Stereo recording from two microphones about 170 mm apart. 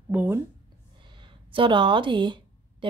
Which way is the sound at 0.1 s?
10° right (ahead or behind).